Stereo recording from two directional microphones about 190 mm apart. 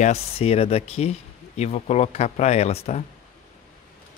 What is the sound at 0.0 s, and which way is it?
Speech, 30° left (ahead or behind).